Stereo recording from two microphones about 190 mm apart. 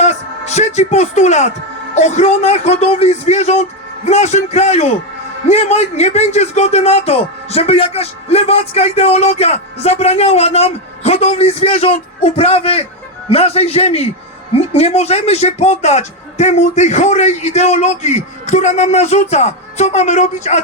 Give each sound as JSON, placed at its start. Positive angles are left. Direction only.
{"t": 0.0, "sound": "a man's voice", "side_deg": 35}